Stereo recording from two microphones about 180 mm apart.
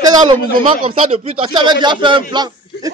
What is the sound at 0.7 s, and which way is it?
Speech, 30° right (ahead or behind).